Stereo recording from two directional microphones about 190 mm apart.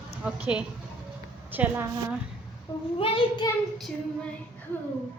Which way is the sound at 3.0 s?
25° left (ahead or behind).